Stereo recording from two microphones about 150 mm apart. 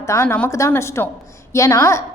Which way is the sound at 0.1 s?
15° left (ahead or behind).